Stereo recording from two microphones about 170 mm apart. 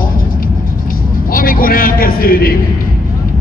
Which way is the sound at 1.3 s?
55° left (ahead or behind).